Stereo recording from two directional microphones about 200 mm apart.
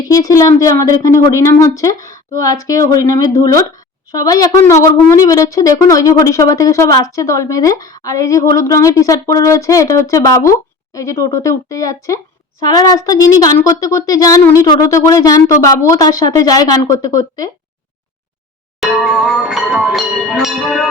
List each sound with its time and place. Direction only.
0.1 s speech: 15° left (ahead or behind)
18.8 s speech: centre (ahead or behind)